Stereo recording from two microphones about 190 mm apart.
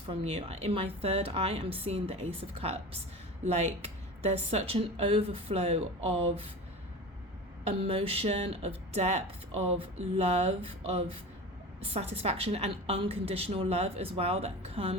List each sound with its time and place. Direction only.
0.1 s speech: 30° right (ahead or behind)
7.6 s speech: 30° right (ahead or behind)